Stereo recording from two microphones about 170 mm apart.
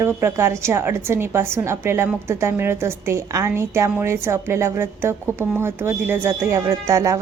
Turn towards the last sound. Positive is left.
turn(degrees=-20)  # may be behind; listen again after turning